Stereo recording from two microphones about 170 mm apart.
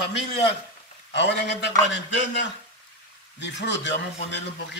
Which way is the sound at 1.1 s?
90° left.